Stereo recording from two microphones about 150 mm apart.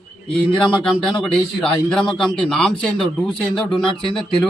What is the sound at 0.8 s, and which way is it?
A man's voice, 5° left (ahead or behind).